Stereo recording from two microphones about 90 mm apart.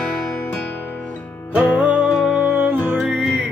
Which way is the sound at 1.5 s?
15° right (ahead or behind).